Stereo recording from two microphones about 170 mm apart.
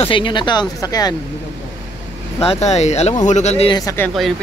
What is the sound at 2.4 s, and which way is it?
Speech, 40° left (ahead or behind).